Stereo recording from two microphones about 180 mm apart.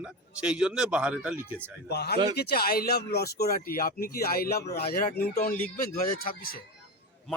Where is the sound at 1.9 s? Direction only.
65° left (ahead or behind).